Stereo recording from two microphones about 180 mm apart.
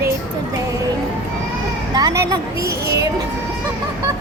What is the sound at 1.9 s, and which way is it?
Speech, 20° right (ahead or behind).